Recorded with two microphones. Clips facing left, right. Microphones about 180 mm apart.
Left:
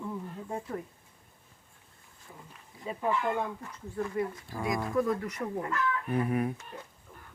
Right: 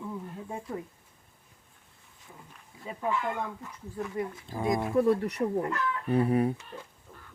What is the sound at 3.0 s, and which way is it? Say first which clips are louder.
Speech: left 1 dB; 10° left (ahead or behind).